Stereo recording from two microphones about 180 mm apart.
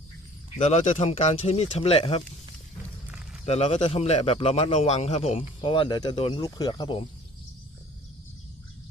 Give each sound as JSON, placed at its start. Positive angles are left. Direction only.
{"t": 0.6, "sound": "a man's voice", "side_deg": 40}
{"t": 3.4, "sound": "a man's voice", "side_deg": 35}